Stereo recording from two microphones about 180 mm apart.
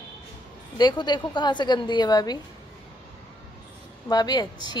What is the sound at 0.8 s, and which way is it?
A woman's voice, 25° left (ahead or behind).